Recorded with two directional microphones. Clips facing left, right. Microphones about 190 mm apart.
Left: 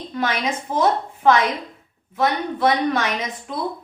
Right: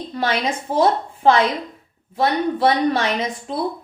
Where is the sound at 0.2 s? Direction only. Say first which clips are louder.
Right 1 dB; 30° right (ahead or behind).